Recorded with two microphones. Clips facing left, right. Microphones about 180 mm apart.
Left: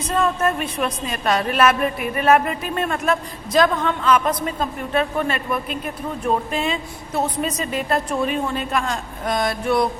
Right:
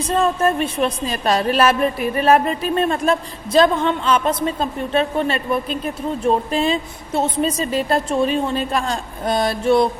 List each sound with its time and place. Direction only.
0.1 s a woman's voice: 30° right (ahead or behind)